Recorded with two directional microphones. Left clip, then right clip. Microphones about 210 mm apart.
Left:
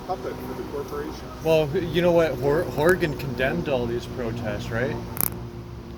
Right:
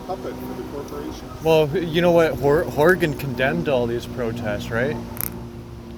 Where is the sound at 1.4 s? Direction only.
55° right (ahead or behind).